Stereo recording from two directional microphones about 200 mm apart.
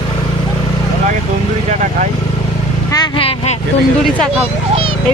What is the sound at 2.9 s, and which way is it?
Speech, 20° left (ahead or behind).